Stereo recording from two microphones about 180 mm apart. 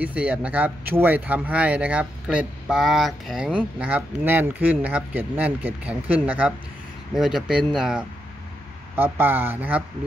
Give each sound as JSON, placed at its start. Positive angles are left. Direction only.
{"t": 0.0, "sound": "speech", "side_deg": -5}